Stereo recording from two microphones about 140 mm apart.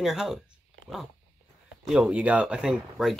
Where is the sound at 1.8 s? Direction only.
5° right (ahead or behind).